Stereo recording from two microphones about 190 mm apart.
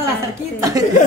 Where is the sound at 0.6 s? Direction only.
20° right (ahead or behind).